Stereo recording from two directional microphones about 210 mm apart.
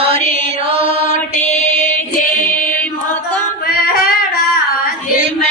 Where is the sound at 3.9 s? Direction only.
45° left (ahead or behind).